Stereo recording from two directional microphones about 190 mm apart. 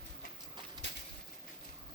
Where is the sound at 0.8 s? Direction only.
20° right (ahead or behind).